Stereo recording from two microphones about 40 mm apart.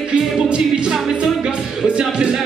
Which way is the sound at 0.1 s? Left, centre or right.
Right.